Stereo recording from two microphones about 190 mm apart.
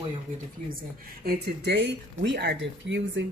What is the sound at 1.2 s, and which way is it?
Speech, 65° right (ahead or behind).